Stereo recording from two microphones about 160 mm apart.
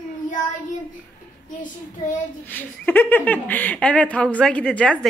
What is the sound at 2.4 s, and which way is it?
Speech, 10° left (ahead or behind).